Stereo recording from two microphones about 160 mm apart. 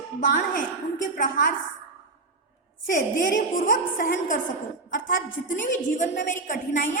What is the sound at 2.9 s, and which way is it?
A woman's voice, 55° left (ahead or behind).